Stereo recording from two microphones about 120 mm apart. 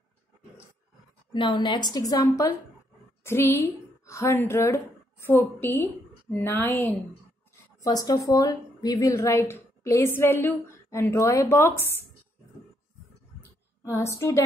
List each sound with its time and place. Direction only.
1.3 s a woman's voice: 40° left (ahead or behind); by 7.0 s 20° left (ahead or behind)
7.8 s a woman's voice: 30° left (ahead or behind)
13.8 s a woman's voice: 25° left (ahead or behind)